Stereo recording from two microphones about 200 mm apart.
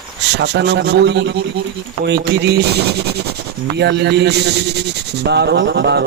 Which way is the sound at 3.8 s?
60° right (ahead or behind).